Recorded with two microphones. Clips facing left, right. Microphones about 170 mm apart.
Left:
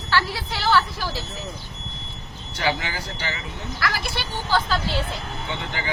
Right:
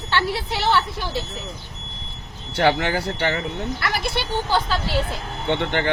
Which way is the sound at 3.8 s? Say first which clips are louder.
Left 1 dB; 20° right (ahead or behind).